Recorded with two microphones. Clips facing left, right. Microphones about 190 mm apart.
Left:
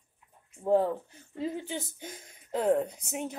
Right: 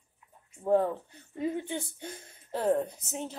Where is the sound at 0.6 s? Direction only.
10° left (ahead or behind).